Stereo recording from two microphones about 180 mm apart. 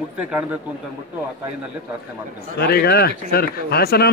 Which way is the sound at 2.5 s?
60° left (ahead or behind).